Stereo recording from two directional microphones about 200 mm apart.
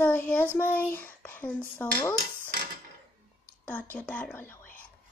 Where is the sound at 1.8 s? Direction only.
10° left (ahead or behind).